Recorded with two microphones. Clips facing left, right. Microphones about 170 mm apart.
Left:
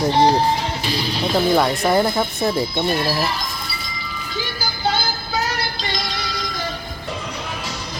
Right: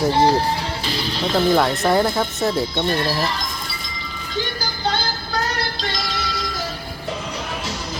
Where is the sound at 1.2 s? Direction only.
10° left (ahead or behind).